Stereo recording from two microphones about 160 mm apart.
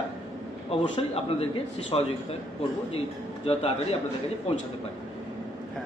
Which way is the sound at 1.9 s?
35° left (ahead or behind).